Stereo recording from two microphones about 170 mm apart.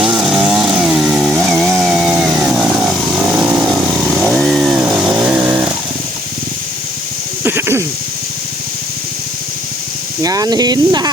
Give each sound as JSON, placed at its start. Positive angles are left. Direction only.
{"t": 0.0, "sound": "chainsaw", "side_deg": -5}
{"t": 7.4, "sound": "a sound", "side_deg": -15}
{"t": 10.2, "sound": "speech", "side_deg": -20}